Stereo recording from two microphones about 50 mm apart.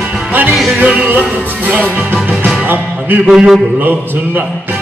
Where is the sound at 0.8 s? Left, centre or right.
Right.